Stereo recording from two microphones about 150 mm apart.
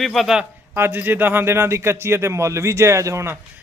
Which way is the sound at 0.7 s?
15° right (ahead or behind).